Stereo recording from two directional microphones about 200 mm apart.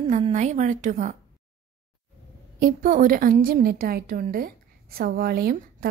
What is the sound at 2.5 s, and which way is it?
A woman's voice, 45° right (ahead or behind).